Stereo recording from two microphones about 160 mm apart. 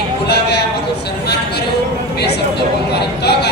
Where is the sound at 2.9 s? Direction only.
90° left.